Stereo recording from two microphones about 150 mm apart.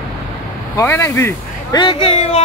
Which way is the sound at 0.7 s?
15° left (ahead or behind).